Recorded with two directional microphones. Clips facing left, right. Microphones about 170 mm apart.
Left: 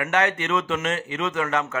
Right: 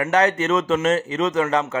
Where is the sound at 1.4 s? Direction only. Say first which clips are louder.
Right 4 dB; 30° right (ahead or behind).